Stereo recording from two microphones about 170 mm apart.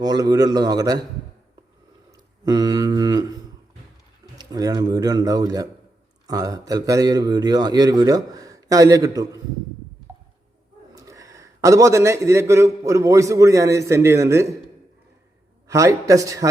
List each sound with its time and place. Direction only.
0.0 s a man's voice: 20° right (ahead or behind)
2.4 s mantra: 20° right (ahead or behind)
4.4 s a man's voice: 25° right (ahead or behind)
10.9 s a man's voice: 20° right (ahead or behind)
15.6 s a man's voice: 20° right (ahead or behind)